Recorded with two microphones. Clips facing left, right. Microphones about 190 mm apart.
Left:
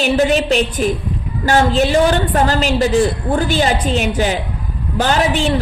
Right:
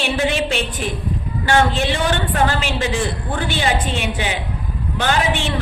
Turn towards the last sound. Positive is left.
turn(degrees=40)  # may be behind; listen again after turning